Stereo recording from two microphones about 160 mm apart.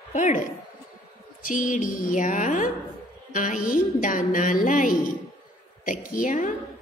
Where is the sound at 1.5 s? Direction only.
55° left (ahead or behind).